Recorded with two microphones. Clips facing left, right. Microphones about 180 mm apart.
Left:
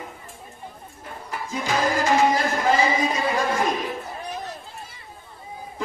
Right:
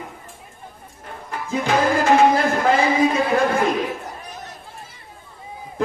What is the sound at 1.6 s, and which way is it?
Music, 60° right (ahead or behind).